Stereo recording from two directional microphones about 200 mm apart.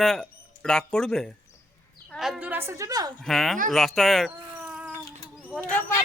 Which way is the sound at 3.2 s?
Centre (ahead or behind).